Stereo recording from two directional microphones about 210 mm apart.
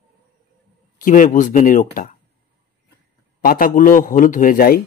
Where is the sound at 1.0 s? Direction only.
40° left (ahead or behind).